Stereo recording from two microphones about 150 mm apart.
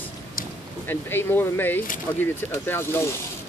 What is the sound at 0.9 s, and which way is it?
Speech, 15° left (ahead or behind).